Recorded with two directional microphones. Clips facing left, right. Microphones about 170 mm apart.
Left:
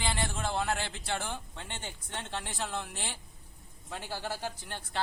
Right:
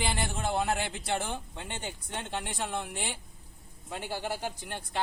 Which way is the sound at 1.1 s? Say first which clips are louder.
Right 3 dB; 15° right (ahead or behind).